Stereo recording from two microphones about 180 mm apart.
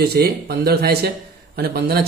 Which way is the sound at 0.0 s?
60° right (ahead or behind).